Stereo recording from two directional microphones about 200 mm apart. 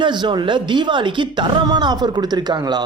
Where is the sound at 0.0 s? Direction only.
25° right (ahead or behind).